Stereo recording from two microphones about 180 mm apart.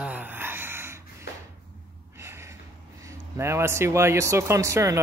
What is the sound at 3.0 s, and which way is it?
Speech, 15° right (ahead or behind).